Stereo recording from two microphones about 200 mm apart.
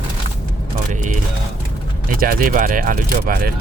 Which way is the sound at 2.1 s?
45° right (ahead or behind).